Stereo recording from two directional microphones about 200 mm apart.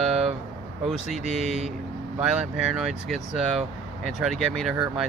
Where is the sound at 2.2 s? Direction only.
5° right (ahead or behind).